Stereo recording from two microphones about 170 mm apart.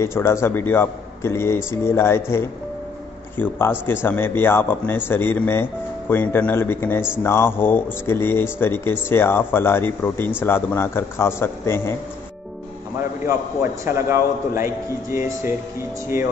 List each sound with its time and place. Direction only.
0.0 s speech: 15° left (ahead or behind)
13.2 s a man's voice: 15° right (ahead or behind)